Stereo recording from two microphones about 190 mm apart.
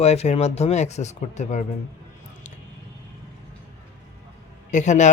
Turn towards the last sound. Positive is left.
turn(degrees=40)  # may be behind; listen again after turning